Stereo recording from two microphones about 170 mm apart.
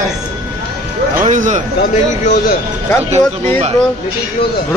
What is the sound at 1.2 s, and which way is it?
Speech, 50° right (ahead or behind).